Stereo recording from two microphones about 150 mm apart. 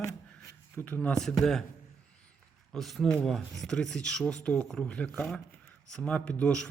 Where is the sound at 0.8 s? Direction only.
10° left (ahead or behind).